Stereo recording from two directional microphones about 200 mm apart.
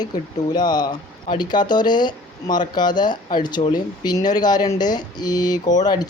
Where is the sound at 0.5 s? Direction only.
20° left (ahead or behind).